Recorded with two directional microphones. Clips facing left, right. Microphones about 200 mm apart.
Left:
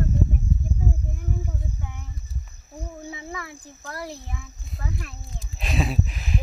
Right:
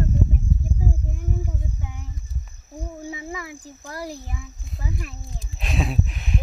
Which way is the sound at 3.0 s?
10° right (ahead or behind).